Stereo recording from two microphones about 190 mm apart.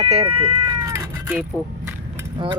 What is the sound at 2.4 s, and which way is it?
Speech, 25° right (ahead or behind).